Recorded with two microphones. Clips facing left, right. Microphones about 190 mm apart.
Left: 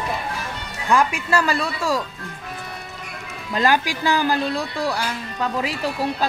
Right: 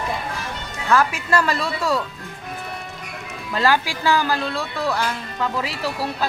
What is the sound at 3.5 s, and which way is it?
Speech, 15° left (ahead or behind).